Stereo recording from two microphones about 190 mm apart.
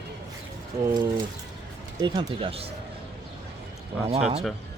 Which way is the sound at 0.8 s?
20° right (ahead or behind).